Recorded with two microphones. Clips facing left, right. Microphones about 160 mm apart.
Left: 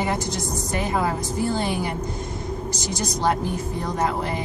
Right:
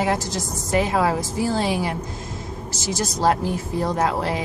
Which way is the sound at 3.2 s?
90° right.